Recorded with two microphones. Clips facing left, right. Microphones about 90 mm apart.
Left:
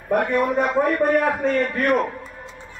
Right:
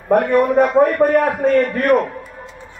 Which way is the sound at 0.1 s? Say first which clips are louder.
Right 6 dB; 45° right (ahead or behind).